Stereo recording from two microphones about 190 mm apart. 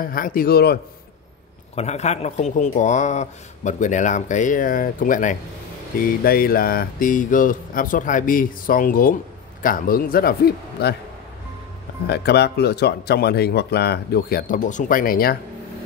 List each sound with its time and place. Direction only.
0.0 s speech: 50° left (ahead or behind)
1.8 s a man's voice: 35° left (ahead or behind); by 11.0 s 55° left (ahead or behind)
12.1 s speech: 60° left (ahead or behind)